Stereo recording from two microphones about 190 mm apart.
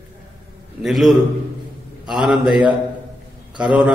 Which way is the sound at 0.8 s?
Centre (ahead or behind).